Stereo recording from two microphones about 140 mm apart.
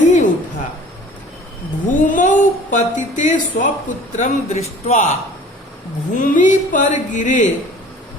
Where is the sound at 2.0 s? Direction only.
65° left (ahead or behind).